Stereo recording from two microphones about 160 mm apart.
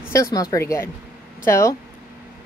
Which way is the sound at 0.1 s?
20° left (ahead or behind).